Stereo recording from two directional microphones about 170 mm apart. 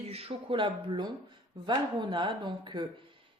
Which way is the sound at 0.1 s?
35° right (ahead or behind).